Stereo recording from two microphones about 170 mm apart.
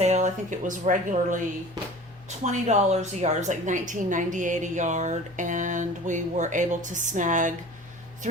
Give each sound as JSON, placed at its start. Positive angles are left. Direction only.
{"t": 0.0, "sound": "speech", "side_deg": -45}
{"t": 2.4, "sound": "a woman's voice", "side_deg": -40}